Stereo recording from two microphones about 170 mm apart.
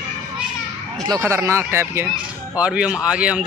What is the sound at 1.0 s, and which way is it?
Speech, 20° right (ahead or behind).